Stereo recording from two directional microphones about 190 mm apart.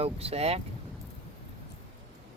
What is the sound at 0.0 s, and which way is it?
Speech, 30° right (ahead or behind).